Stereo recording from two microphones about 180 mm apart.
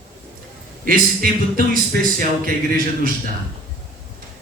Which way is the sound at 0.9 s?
55° right (ahead or behind).